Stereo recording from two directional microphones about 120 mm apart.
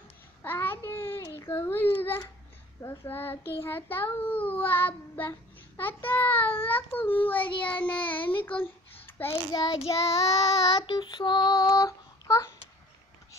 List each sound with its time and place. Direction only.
0.4 s babbling: 15° left (ahead or behind)
2.8 s child singing: 20° left (ahead or behind)
9.5 s child singing: 35° left (ahead or behind)
10.9 s child singing: 35° left (ahead or behind)